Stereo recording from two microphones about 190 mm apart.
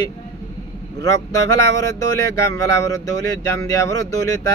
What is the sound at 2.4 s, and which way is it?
Speech, 15° left (ahead or behind).